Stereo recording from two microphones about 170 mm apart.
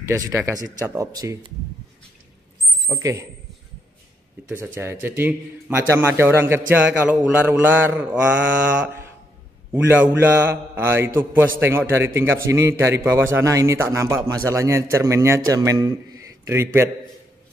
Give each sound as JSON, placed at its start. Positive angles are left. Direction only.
{"t": 0.0, "sound": "speech", "side_deg": -20}
{"t": 2.9, "sound": "speech", "side_deg": -20}
{"t": 4.5, "sound": "a man's voice", "side_deg": -15}